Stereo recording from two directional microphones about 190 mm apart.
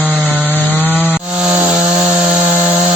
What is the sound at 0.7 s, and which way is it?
Rub, 10° left (ahead or behind).